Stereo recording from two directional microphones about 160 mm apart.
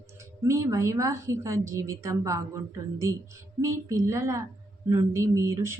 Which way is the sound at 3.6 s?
20° right (ahead or behind).